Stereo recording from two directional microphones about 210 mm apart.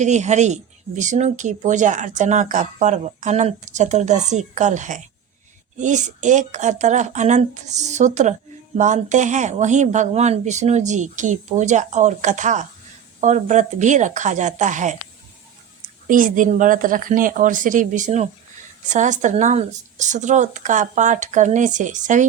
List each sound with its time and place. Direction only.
0.0 s speech: 35° right (ahead or behind)
16.0 s speech: 40° right (ahead or behind)